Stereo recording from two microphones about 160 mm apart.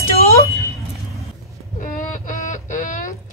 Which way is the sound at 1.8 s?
55° left (ahead or behind).